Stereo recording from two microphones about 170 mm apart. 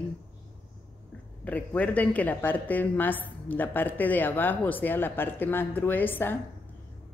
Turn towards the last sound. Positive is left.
turn(degrees=10)  # may be behind; listen again after turning